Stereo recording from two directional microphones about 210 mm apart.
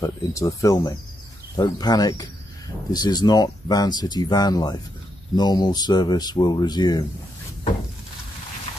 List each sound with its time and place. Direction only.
0.0 s speech: 15° left (ahead or behind)